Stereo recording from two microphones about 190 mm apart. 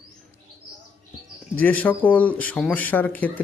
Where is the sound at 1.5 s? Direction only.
10° left (ahead or behind).